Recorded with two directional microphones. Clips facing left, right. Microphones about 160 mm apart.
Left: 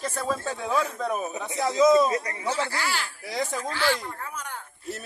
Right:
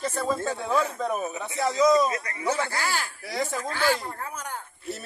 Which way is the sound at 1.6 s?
20° left (ahead or behind).